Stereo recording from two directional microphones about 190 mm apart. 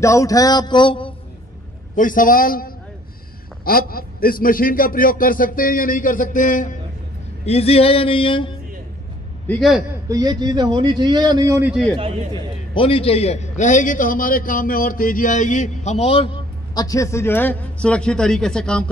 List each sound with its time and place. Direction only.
0.0 s a man's voice: 15° left (ahead or behind)
2.0 s a man's voice: 45° left (ahead or behind)
7.4 s a man's voice: 30° left (ahead or behind)
9.5 s a man's voice: centre (ahead or behind)
10.0 s a man's voice: 20° right (ahead or behind)
12.7 s a man's voice: 30° left (ahead or behind)
16.7 s a man's voice: 20° left (ahead or behind)